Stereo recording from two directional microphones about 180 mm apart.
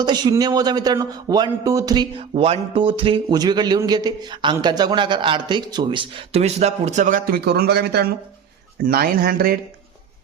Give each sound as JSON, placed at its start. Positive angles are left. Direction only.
{"t": 0.0, "sound": "a man's voice", "side_deg": -25}